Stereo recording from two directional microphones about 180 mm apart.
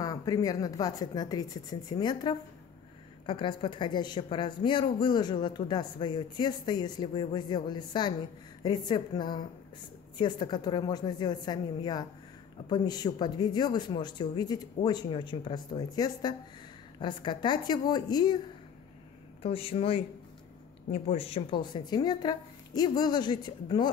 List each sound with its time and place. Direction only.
0.0 s a woman's voice: 20° left (ahead or behind)
19.4 s a woman's voice: 30° left (ahead or behind)